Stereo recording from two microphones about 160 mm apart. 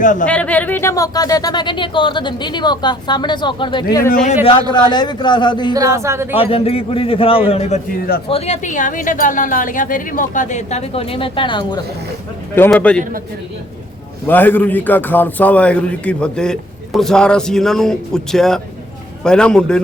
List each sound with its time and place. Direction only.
0.0 s a woman's voice: 55° left (ahead or behind)
0.3 s speech: 10° left (ahead or behind); by 4.1 s 25° left (ahead or behind)
4.1 s a woman's voice: 50° left (ahead or behind)
4.7 s speech: 25° left (ahead or behind)
5.7 s speech: 20° right (ahead or behind)
6.3 s a man's voice: 35° left (ahead or behind)
12.7 s a man's voice: 5° left (ahead or behind)
13.0 s a man's voice: 60° right (ahead or behind)
14.3 s a man's voice: 10° left (ahead or behind)